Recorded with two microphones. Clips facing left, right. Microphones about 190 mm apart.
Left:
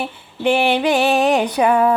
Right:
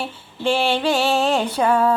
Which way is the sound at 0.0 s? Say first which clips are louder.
Left 3 dB; 20° left (ahead or behind).